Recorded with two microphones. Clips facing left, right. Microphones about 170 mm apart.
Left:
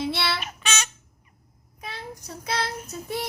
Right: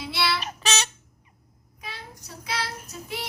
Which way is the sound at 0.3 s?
35° right (ahead or behind).